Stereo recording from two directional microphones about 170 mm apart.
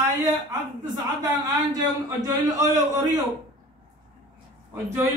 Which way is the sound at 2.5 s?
20° right (ahead or behind).